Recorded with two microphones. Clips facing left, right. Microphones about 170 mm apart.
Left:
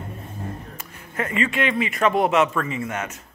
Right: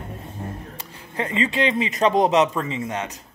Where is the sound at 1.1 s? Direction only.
25° right (ahead or behind).